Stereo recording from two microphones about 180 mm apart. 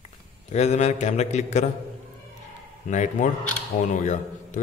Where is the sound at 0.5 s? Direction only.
40° left (ahead or behind).